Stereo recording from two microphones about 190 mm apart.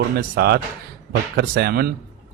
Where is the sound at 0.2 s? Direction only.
60° right (ahead or behind).